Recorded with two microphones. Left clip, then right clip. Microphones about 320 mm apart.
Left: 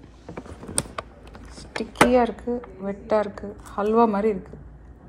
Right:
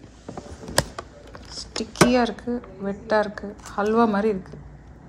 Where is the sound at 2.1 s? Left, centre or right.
Centre.